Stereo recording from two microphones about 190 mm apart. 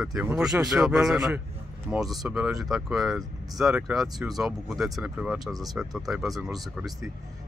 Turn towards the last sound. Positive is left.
turn(degrees=0)  # may be behind; listen again after turning